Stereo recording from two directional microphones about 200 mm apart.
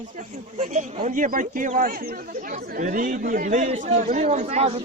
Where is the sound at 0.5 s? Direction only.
35° right (ahead or behind).